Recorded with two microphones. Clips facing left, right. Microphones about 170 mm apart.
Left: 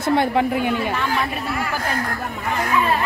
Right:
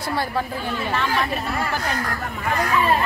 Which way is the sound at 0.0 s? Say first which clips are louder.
Left 7 dB; 20° left (ahead or behind).